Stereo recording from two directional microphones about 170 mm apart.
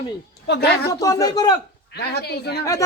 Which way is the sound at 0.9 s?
20° left (ahead or behind).